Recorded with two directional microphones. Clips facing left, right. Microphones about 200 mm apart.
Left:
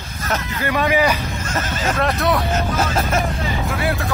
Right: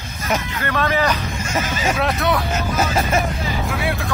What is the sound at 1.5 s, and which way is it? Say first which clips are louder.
Speech: right 1 dB; 10° right (ahead or behind).